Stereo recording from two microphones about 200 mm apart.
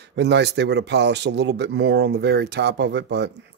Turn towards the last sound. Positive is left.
turn(degrees=-60)  # may be behind; listen again after turning